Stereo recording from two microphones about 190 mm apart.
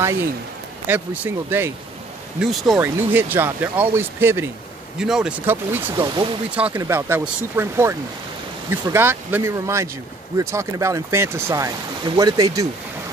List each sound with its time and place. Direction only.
0.8 s speech: 10° right (ahead or behind)
2.5 s speech: centre (ahead or behind)
2.8 s speech: 10° right (ahead or behind)
5.9 s speech: 25° right (ahead or behind)
6.5 s speech: 5° right (ahead or behind)